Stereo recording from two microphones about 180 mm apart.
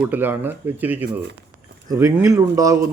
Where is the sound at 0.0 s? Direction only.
10° right (ahead or behind).